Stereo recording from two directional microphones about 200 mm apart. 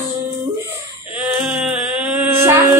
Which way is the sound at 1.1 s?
5° right (ahead or behind).